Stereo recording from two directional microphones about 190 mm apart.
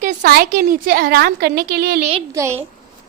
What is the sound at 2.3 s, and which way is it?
Speech, 15° right (ahead or behind).